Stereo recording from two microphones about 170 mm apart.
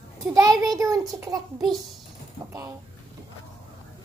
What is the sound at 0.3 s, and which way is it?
A child's voice, 20° right (ahead or behind).